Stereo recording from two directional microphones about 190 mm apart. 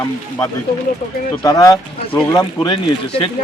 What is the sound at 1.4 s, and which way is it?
Speech, 20° left (ahead or behind).